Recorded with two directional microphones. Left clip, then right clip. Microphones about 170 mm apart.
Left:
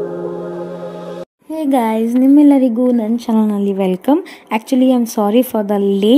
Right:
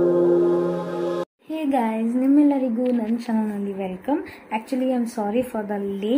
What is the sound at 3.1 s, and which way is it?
Speech, 50° left (ahead or behind).